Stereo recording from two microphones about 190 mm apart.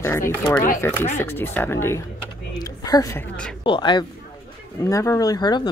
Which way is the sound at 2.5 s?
20° left (ahead or behind).